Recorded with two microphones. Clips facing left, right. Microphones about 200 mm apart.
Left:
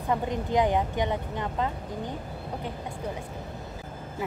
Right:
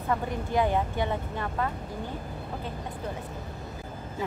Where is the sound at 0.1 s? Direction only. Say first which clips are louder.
Left 2 dB; 20° left (ahead or behind).